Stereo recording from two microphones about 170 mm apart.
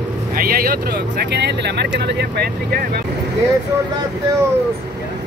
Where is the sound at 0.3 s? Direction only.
60° right (ahead or behind).